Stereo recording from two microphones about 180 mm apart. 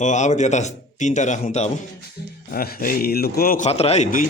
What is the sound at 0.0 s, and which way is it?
A man's voice, 40° left (ahead or behind).